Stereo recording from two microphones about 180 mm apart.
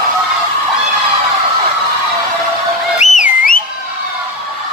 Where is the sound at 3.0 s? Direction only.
45° left (ahead or behind).